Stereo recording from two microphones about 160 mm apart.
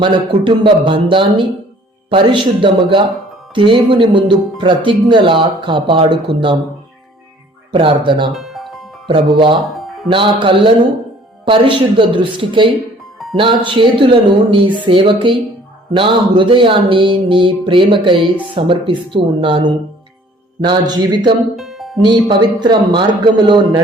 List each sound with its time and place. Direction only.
0.0 s speech: 30° right (ahead or behind)
7.7 s speech: 35° right (ahead or behind)
8.4 s music: centre (ahead or behind)
9.0 s speech: 30° right (ahead or behind)
9.6 s music: centre (ahead or behind)
10.1 s a man's voice: 30° right (ahead or behind)
21.5 s music: centre (ahead or behind)
22.0 s a man's voice: 30° right (ahead or behind)